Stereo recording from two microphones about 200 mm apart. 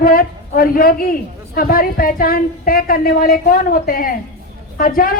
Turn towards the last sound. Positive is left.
turn(degrees=45)  # may be behind; listen again after turning